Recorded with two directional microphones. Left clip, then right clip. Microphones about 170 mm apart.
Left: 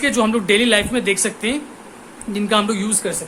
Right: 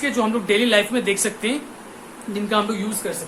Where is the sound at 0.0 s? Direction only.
70° left (ahead or behind); by 1.6 s 30° left (ahead or behind).